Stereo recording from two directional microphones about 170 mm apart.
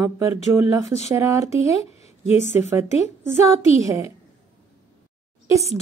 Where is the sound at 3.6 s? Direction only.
35° left (ahead or behind).